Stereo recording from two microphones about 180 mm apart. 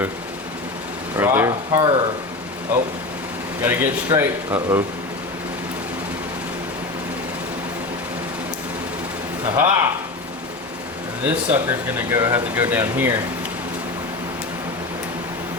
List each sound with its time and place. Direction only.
1.1 s speech: 10° right (ahead or behind)
2.7 s speech: 10° right (ahead or behind)
9.6 s speech: 15° right (ahead or behind)
11.3 s speech: 10° right (ahead or behind)